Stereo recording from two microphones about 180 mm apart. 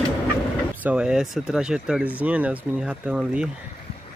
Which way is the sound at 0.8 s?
5° right (ahead or behind).